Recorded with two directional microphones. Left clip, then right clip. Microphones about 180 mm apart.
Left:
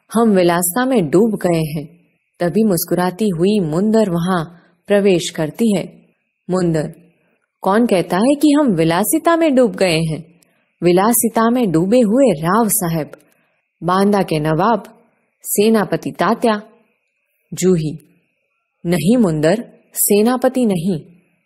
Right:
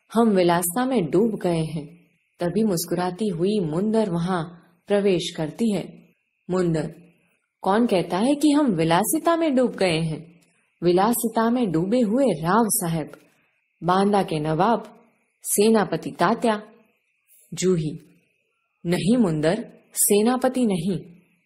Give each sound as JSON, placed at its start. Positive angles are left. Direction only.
{"t": 0.1, "sound": "a woman's voice", "side_deg": 35}